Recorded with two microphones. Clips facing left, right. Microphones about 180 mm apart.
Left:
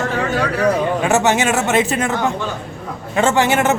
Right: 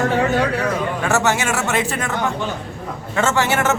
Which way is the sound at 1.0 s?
20° left (ahead or behind).